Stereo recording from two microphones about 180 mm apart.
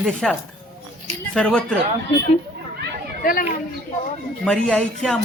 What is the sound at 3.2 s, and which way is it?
Speech, 50° left (ahead or behind).